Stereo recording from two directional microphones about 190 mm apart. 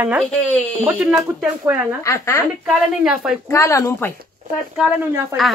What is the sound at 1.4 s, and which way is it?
Speech, 10° right (ahead or behind).